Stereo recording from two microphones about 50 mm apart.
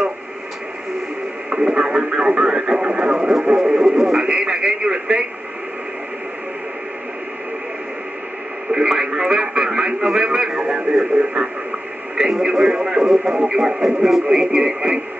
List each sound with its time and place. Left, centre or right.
1.5 s speech: centre
8.7 s speech: centre